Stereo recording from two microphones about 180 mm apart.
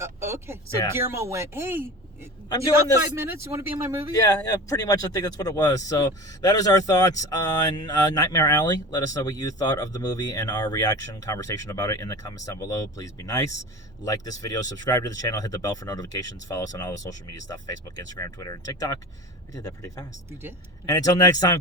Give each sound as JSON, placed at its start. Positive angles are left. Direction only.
{"t": 0.0, "sound": "speech", "side_deg": -15}
{"t": 4.2, "sound": "speech", "side_deg": 20}